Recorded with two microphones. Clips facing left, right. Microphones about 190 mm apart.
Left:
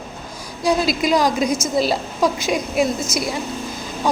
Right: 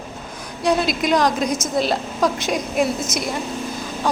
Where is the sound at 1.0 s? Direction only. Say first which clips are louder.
Left 1 dB; 5° left (ahead or behind).